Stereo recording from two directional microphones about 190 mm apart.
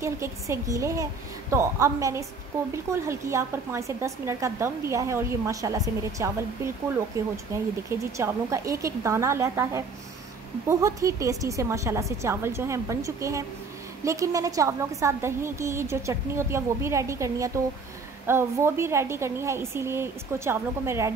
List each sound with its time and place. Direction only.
0.0 s speech: 15° right (ahead or behind)